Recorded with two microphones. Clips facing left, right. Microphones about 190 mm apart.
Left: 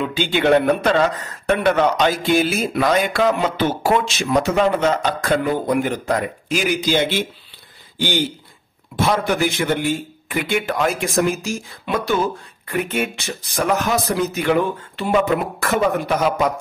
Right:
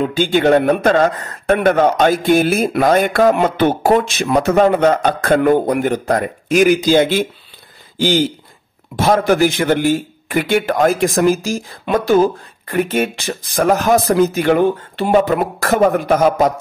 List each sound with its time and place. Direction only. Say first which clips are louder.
0.0 s speech: right 5 dB; 45° right (ahead or behind)
14.6 s speech: right 7 dB; 35° right (ahead or behind)